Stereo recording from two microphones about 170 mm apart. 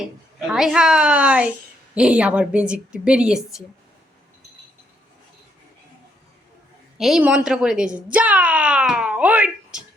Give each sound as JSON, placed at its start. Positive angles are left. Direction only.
{"t": 0.0, "sound": "a woman's voice", "side_deg": -5}
{"t": 7.0, "sound": "a woman's voice", "side_deg": -5}